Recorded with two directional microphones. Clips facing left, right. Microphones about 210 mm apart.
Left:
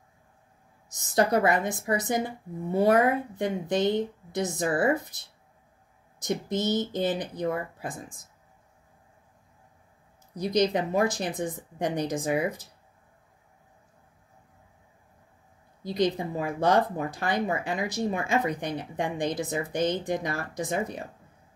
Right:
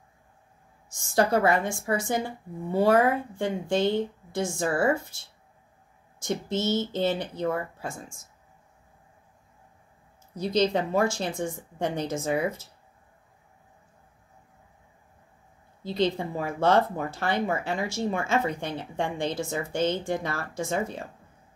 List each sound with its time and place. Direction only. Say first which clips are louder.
0.9 s a woman's voice: even; 20° left (ahead or behind)
10.3 s speech: even; 15° left (ahead or behind)
15.8 s speech: even; 15° left (ahead or behind)